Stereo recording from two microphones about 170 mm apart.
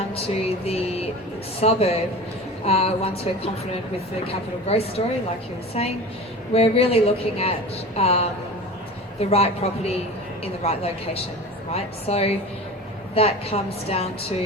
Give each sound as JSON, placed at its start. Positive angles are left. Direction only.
{"t": 0.0, "sound": "music", "side_deg": 35}
{"t": 9.3, "sound": "music", "side_deg": 35}